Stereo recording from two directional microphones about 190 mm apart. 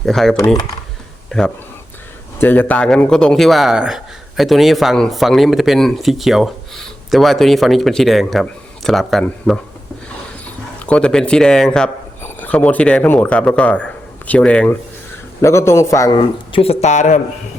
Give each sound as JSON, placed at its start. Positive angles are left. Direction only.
{"t": 0.0, "sound": "speech", "side_deg": 0}
{"t": 10.8, "sound": "speech", "side_deg": 5}